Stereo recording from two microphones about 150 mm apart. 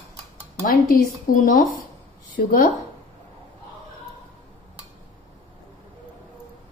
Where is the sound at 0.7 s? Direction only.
65° left (ahead or behind).